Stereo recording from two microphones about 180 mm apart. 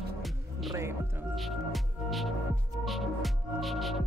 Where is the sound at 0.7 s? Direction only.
15° right (ahead or behind).